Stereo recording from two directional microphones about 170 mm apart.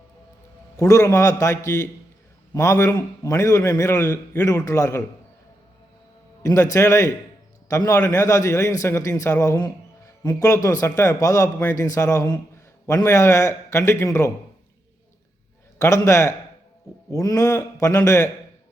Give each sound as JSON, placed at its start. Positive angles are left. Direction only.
{"t": 0.8, "sound": "a man's voice", "side_deg": 20}
{"t": 6.4, "sound": "a man's voice", "side_deg": 20}
{"t": 15.8, "sound": "a man's voice", "side_deg": 15}